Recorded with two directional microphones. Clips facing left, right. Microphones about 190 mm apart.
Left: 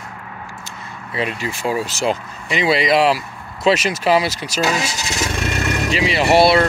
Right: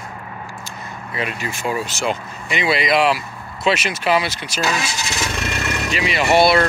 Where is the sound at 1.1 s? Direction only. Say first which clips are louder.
Left 3 dB; 30° left (ahead or behind).